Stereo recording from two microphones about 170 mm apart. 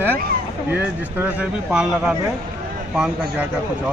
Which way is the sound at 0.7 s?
10° right (ahead or behind).